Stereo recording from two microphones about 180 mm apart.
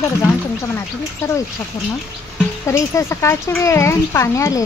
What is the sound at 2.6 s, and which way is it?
Speech, 15° left (ahead or behind).